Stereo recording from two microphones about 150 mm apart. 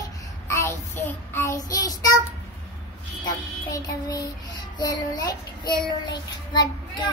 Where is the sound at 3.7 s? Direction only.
25° left (ahead or behind).